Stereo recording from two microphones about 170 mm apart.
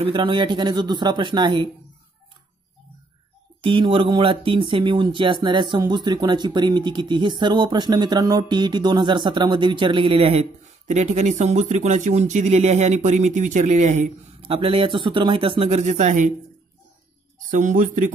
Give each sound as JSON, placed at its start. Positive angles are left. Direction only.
{"t": 0.0, "sound": "speech", "side_deg": -30}
{"t": 3.6, "sound": "speech", "side_deg": -30}
{"t": 15.8, "sound": "speech", "side_deg": -45}
{"t": 17.5, "sound": "speech", "side_deg": -50}